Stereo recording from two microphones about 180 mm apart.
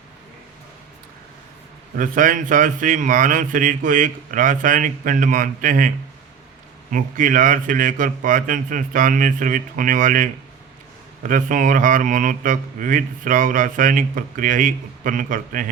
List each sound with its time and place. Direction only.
2.0 s speech: 50° right (ahead or behind)
6.9 s speech: 45° right (ahead or behind)